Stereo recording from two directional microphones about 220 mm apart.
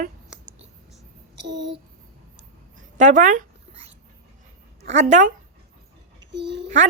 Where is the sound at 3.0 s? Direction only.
35° right (ahead or behind).